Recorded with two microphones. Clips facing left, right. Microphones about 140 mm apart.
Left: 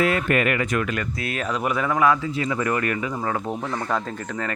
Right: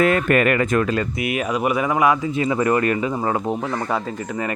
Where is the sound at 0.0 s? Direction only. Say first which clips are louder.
Right 4 dB; 50° right (ahead or behind).